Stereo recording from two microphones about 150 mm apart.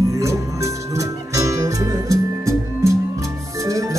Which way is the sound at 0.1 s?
20° right (ahead or behind).